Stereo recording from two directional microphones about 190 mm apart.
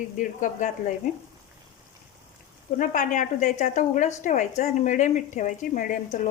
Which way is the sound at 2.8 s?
45° left (ahead or behind).